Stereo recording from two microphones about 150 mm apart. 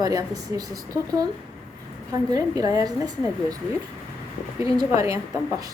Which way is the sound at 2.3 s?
25° right (ahead or behind).